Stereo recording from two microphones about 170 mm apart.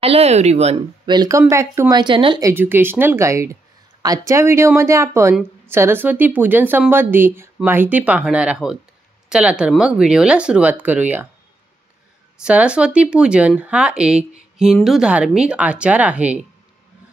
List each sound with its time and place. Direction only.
0.0 s speech: 35° right (ahead or behind)
1.0 s speech: 25° right (ahead or behind)
2.4 s speech: 10° right (ahead or behind)
12.4 s speech: 5° right (ahead or behind)